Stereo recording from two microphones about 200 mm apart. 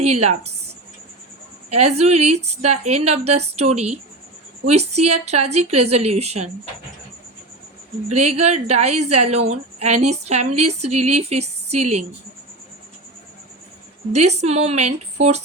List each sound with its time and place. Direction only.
0.0 s a woman's voice: 35° right (ahead or behind)
1.7 s a woman's voice: 30° right (ahead or behind)
8.1 s a woman's voice: 35° right (ahead or behind)
14.1 s a woman's voice: 35° right (ahead or behind)